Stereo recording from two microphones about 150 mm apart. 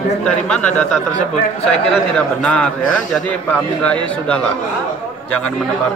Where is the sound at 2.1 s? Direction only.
5° left (ahead or behind).